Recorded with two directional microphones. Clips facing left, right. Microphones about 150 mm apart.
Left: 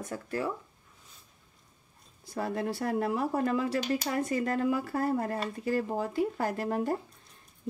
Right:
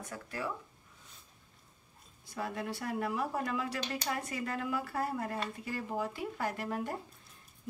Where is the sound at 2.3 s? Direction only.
40° left (ahead or behind).